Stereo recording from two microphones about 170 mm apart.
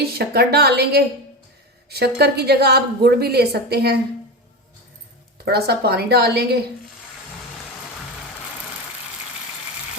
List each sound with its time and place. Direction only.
0.0 s a woman's voice: 70° right (ahead or behind)
5.5 s a woman's voice: 70° right (ahead or behind)